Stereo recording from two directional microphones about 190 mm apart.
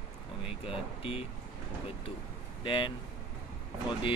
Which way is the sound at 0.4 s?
30° left (ahead or behind).